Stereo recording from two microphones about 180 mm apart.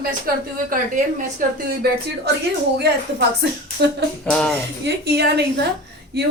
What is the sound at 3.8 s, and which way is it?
Speech, 70° right (ahead or behind).